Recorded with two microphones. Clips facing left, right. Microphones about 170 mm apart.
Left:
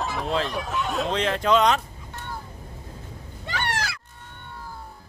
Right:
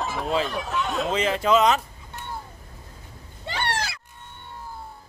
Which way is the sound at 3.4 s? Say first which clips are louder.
Right 1 dB; 30° right (ahead or behind).